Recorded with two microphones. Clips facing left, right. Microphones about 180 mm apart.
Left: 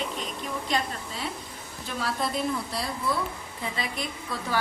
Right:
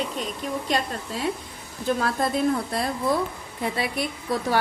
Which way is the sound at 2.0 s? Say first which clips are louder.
Right 2 dB; 50° right (ahead or behind).